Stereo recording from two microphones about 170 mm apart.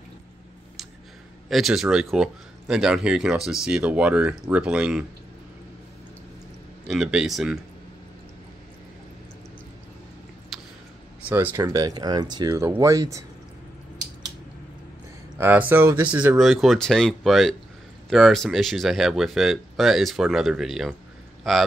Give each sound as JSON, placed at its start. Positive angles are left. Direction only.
{"t": 1.5, "sound": "speech", "side_deg": 0}
{"t": 6.9, "sound": "speech", "side_deg": -5}
{"t": 10.5, "sound": "a sound", "side_deg": 0}
{"t": 11.2, "sound": "speech", "side_deg": -10}
{"t": 15.3, "sound": "speech", "side_deg": -10}